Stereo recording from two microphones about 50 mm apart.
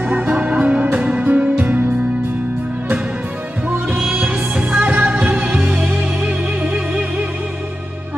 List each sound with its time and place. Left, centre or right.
0.0 s music: right
4.1 s music: right